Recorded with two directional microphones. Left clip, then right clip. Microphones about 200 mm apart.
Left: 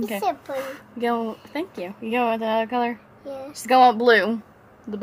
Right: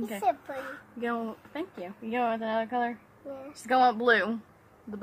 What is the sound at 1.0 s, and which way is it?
Speech, 20° left (ahead or behind).